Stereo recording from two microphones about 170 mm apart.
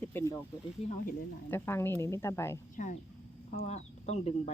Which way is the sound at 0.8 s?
35° left (ahead or behind).